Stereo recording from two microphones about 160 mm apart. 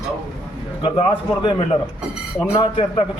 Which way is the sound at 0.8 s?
35° left (ahead or behind).